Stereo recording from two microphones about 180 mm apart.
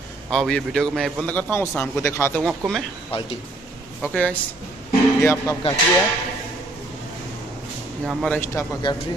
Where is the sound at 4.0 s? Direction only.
5° left (ahead or behind).